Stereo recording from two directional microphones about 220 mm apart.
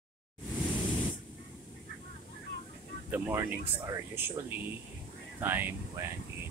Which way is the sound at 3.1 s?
10° right (ahead or behind).